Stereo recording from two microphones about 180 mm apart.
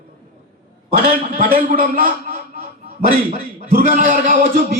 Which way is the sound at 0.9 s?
55° right (ahead or behind).